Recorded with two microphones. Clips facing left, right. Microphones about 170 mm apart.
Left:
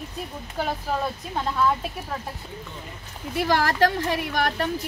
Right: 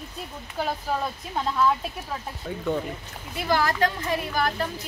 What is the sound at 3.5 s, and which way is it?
A woman's voice, 65° left (ahead or behind).